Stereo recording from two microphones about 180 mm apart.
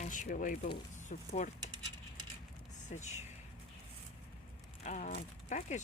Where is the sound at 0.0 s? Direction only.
45° left (ahead or behind).